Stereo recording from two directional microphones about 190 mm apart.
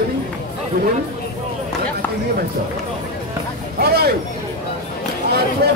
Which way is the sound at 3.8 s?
55° right (ahead or behind).